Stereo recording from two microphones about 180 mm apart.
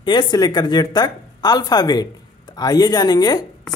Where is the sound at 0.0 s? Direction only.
25° left (ahead or behind).